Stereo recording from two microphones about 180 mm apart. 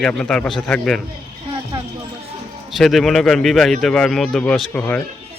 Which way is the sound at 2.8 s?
Centre (ahead or behind).